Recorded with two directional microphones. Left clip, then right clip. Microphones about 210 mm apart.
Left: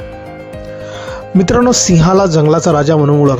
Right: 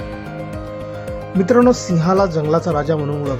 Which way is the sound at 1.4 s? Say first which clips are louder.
Left 2 dB; 35° left (ahead or behind).